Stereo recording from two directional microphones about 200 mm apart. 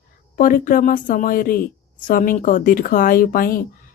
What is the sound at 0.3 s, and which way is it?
A woman's voice, 45° left (ahead or behind).